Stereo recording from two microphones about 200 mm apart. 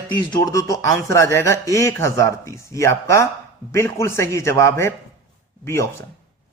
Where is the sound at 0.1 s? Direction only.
20° left (ahead or behind).